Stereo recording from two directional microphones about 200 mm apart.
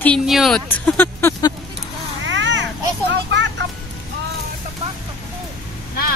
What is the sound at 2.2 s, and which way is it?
Vehicle, 65° right (ahead or behind).